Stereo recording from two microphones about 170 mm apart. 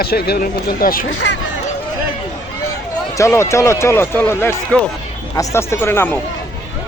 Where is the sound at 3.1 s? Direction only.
15° left (ahead or behind).